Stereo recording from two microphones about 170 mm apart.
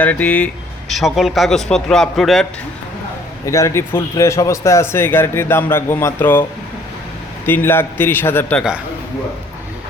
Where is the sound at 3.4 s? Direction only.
15° left (ahead or behind).